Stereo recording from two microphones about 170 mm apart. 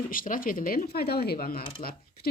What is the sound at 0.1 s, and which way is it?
Speech, 55° left (ahead or behind).